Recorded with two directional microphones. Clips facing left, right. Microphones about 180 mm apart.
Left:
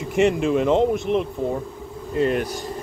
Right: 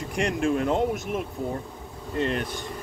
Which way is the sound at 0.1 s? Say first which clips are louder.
Left 6 dB; centre (ahead or behind).